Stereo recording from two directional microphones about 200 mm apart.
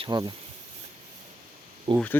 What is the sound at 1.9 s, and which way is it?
Speech, 30° right (ahead or behind).